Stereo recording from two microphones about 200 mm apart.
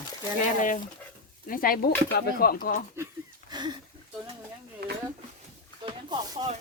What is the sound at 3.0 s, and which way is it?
Speech, 10° right (ahead or behind).